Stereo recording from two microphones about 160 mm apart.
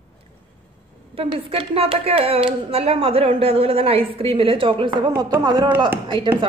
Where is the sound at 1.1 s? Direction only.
35° right (ahead or behind).